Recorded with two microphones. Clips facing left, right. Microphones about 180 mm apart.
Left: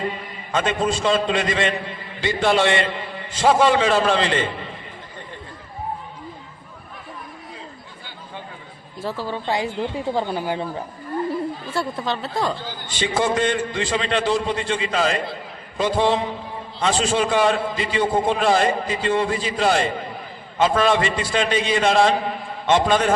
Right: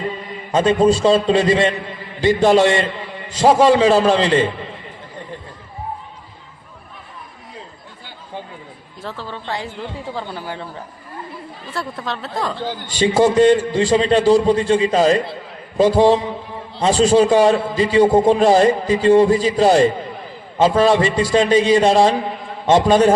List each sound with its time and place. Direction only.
0.5 s a man's voice: 35° right (ahead or behind)
9.0 s a woman's voice: 10° left (ahead or behind)
11.6 s speech: centre (ahead or behind)
12.9 s a man's voice: 35° right (ahead or behind)